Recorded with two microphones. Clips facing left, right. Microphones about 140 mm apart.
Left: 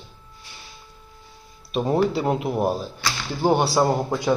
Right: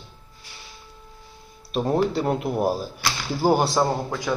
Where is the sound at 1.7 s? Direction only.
5° left (ahead or behind).